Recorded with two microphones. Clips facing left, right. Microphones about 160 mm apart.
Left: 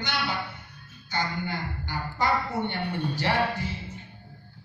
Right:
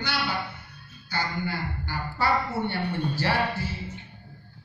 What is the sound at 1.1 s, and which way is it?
A woman's voice, 15° left (ahead or behind).